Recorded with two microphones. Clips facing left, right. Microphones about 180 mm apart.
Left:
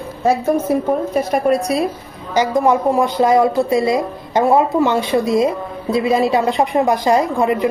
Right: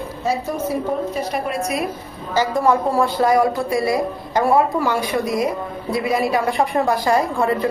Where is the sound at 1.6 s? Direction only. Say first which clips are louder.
Left 4 dB; 35° left (ahead or behind).